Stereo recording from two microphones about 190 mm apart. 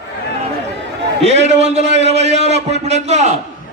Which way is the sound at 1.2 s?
35° right (ahead or behind).